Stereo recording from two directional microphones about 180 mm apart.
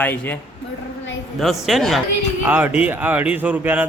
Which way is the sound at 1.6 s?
Centre (ahead or behind).